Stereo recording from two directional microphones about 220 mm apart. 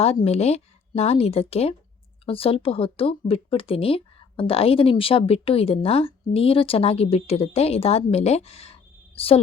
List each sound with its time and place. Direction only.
0.0 s speech: 25° left (ahead or behind)